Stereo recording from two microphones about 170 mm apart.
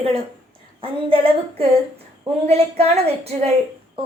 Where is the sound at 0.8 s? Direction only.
30° right (ahead or behind).